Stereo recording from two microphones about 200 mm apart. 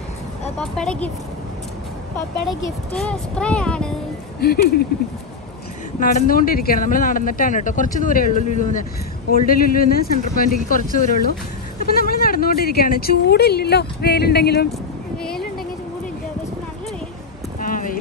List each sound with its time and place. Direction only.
0.6 s speech: 5° left (ahead or behind)
2.9 s speech: 5° left (ahead or behind)
4.4 s speech: 50° left (ahead or behind)
5.9 s speech: 45° left (ahead or behind)
17.6 s clip-clop: 40° left (ahead or behind)